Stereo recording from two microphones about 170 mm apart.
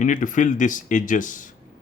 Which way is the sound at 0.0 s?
50° left (ahead or behind).